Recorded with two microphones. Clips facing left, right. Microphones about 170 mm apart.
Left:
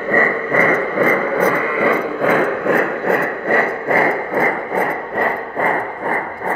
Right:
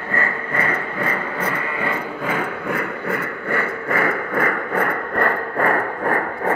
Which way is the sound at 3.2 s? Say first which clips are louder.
Left 7 dB; 40° left (ahead or behind).